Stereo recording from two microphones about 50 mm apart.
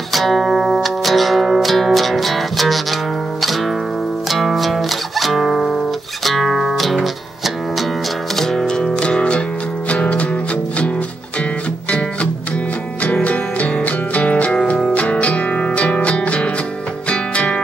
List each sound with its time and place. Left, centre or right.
0.1 s music: centre
8.4 s music: centre; by 10.9 s left
13.0 s music: left